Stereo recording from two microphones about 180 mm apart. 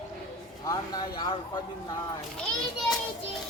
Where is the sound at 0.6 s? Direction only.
20° left (ahead or behind).